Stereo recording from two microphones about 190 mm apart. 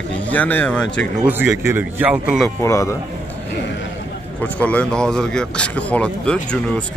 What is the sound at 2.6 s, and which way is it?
Speech, 15° left (ahead or behind).